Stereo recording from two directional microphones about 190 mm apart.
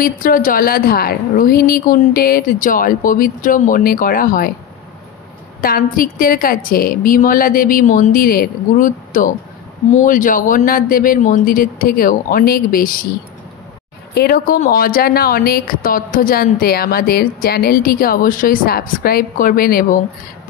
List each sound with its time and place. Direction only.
0.0 s a woman's voice: 45° left (ahead or behind)
5.6 s a woman's voice: 50° left (ahead or behind)
14.1 s a woman's voice: 50° left (ahead or behind)